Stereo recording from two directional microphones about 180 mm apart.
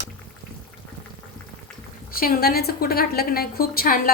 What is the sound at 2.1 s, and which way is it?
A woman's voice, 55° left (ahead or behind).